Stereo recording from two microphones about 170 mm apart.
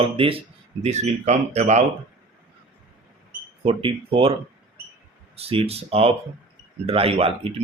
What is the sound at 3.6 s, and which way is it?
Speech, 35° right (ahead or behind).